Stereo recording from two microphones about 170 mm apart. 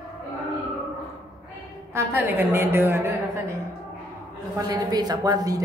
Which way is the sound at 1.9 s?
15° right (ahead or behind).